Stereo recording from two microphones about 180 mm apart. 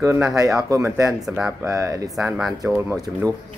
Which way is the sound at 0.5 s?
20° right (ahead or behind).